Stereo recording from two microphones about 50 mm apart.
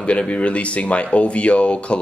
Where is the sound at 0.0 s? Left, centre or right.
Left.